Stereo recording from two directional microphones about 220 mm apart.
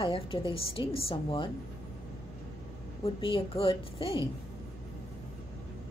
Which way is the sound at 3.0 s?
25° left (ahead or behind).